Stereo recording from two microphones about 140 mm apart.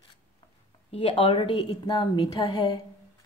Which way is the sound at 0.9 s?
40° left (ahead or behind).